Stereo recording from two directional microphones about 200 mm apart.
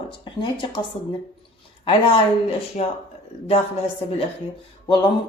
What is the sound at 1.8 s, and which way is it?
A woman's voice, 25° left (ahead or behind).